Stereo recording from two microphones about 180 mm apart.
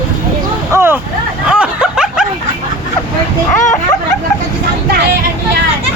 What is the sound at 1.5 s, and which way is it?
Snicker, 5° right (ahead or behind).